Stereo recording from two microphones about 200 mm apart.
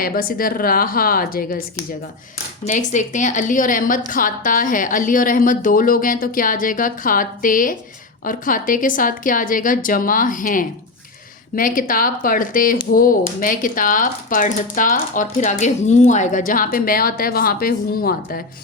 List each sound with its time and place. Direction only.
0.0 s speech: 45° left (ahead or behind)
2.6 s speech: 40° left (ahead or behind)